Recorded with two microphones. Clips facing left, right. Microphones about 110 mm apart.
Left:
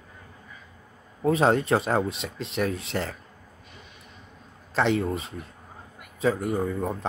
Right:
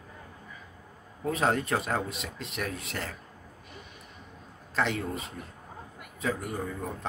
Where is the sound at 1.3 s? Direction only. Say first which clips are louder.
Left 6 dB; 30° left (ahead or behind).